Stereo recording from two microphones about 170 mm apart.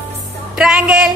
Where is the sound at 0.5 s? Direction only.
5° right (ahead or behind).